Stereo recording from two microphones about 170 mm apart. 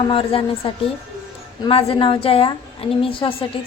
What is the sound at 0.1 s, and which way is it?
Speech, 30° left (ahead or behind).